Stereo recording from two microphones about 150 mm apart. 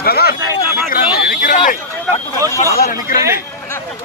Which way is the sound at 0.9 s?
75° left (ahead or behind).